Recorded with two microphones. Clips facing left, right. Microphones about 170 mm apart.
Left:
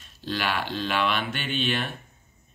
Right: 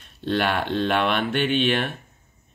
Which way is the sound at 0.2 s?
60° right (ahead or behind).